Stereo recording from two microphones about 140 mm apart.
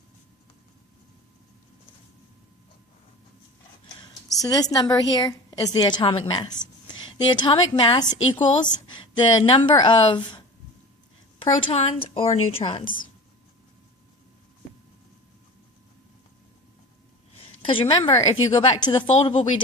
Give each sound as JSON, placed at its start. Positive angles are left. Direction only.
{"t": 4.4, "sound": "a woman's voice", "side_deg": 25}
{"t": 12.8, "sound": "a woman's voice", "side_deg": 80}
{"t": 17.7, "sound": "a woman's voice", "side_deg": 35}